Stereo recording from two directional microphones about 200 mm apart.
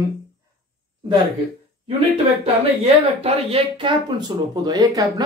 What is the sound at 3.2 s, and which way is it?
Speech, 25° right (ahead or behind).